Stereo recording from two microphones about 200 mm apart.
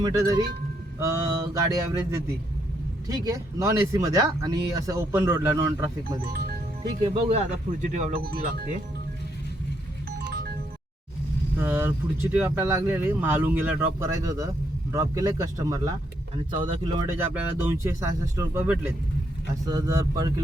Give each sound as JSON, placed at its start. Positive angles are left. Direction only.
{"t": 0.0, "sound": "speech", "side_deg": -20}
{"t": 6.2, "sound": "speech", "side_deg": -55}
{"t": 7.1, "sound": "speech", "side_deg": -30}
{"t": 8.2, "sound": "speech", "side_deg": -50}
{"t": 11.6, "sound": "speech", "side_deg": -10}
{"t": 17.2, "sound": "speech", "side_deg": -10}